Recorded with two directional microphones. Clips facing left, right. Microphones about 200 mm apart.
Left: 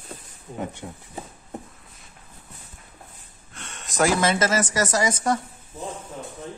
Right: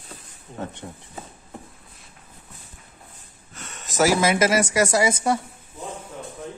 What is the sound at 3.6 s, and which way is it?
A woman's voice, centre (ahead or behind).